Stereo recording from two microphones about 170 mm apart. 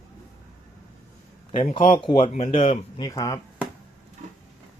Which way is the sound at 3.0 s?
20° left (ahead or behind).